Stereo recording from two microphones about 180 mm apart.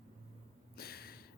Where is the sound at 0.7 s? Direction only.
60° left (ahead or behind).